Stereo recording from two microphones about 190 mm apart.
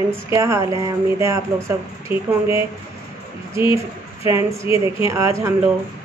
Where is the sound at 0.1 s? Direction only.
15° right (ahead or behind).